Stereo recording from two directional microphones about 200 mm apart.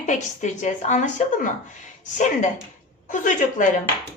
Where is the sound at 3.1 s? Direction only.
40° left (ahead or behind).